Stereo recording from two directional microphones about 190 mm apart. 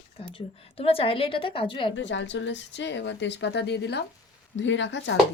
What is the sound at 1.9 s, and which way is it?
A woman's voice, 75° left (ahead or behind).